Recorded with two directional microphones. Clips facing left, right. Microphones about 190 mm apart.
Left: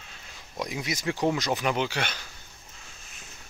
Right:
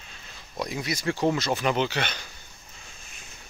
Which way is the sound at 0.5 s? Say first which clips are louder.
Right 2 dB; 15° left (ahead or behind).